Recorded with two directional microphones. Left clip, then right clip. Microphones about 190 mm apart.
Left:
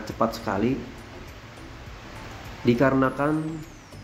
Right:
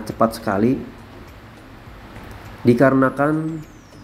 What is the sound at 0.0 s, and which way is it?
Speech, 15° right (ahead or behind).